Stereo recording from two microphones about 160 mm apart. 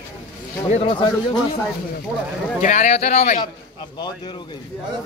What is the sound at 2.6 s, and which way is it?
Speech, 50° left (ahead or behind).